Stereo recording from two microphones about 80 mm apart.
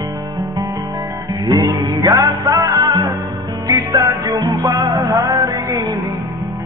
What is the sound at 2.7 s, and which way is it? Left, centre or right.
Music, right.